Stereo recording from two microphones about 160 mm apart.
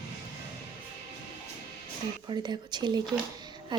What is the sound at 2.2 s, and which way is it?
Speech, 25° right (ahead or behind).